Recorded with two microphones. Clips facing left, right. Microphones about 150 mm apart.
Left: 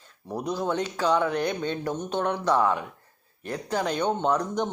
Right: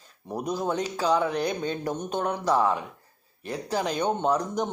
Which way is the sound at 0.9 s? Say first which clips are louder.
Even; 10° right (ahead or behind).